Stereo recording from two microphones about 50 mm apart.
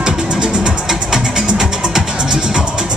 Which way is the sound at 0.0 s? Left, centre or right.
Centre.